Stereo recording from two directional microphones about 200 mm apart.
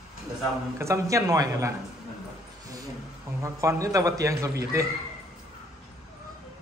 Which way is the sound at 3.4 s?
15° right (ahead or behind).